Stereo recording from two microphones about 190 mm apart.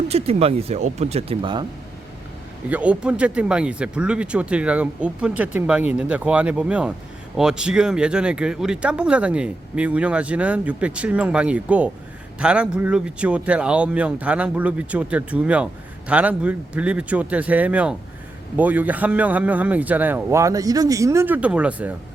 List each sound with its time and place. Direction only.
0.1 s speech: 30° right (ahead or behind)
2.6 s speech: 5° right (ahead or behind)